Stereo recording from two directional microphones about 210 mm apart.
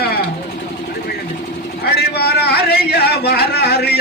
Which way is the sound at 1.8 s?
50° left (ahead or behind).